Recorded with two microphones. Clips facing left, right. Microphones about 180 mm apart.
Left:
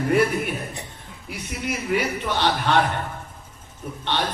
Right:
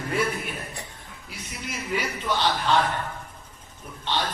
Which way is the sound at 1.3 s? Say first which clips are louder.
Left 8 dB; 60° left (ahead or behind).